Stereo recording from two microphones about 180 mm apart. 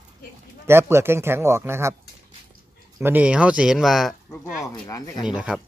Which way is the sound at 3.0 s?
10° right (ahead or behind).